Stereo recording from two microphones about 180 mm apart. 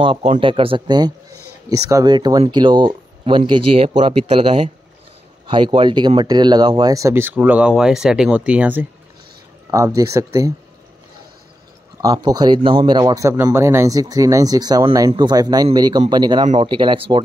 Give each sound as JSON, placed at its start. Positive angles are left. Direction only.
{"t": 0.0, "sound": "a man's voice", "side_deg": -30}
{"t": 12.0, "sound": "a man's voice", "side_deg": -20}